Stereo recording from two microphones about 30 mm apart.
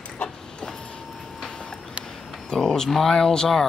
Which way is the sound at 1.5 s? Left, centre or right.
Left.